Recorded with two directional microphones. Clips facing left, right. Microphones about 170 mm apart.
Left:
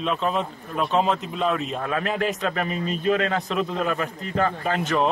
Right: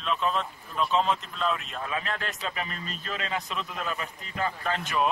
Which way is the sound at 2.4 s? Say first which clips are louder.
Left 9 dB; 50° left (ahead or behind).